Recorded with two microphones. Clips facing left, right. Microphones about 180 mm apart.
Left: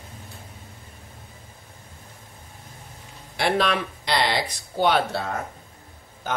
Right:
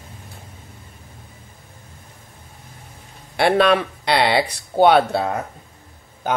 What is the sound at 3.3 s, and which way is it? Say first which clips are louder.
Speech: right 7 dB; 65° right (ahead or behind).